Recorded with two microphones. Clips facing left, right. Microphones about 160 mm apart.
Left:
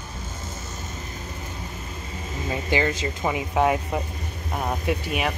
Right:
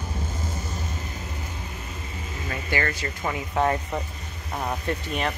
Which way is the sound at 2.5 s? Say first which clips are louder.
Left 4 dB; 20° left (ahead or behind).